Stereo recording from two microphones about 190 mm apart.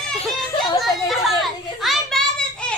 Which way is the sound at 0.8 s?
Centre (ahead or behind).